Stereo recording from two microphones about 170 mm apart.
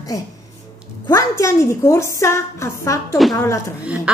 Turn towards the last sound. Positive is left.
turn(degrees=-5)  # may be behind; listen again after turning